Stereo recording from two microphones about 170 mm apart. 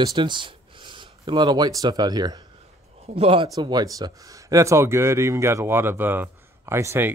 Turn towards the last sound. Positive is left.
turn(degrees=-15)  # may be behind; listen again after turning